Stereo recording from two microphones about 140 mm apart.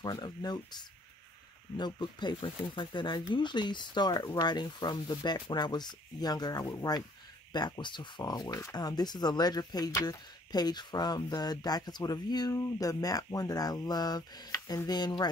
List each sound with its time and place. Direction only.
0.0 s speech: 30° left (ahead or behind)